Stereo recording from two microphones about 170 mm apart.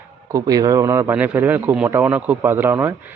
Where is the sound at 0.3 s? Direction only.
20° right (ahead or behind).